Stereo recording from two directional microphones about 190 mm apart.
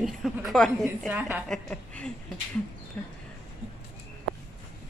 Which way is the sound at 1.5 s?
5° left (ahead or behind).